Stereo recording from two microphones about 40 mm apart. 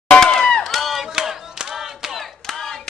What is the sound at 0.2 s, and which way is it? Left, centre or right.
Crowd, centre.